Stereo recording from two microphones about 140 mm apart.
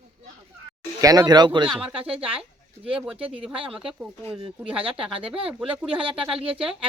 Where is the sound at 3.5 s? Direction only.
40° right (ahead or behind).